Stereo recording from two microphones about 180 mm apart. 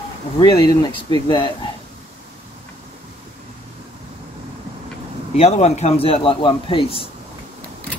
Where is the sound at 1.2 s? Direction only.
25° left (ahead or behind).